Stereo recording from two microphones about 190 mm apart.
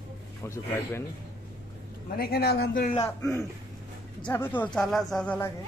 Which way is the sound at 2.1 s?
55° left (ahead or behind).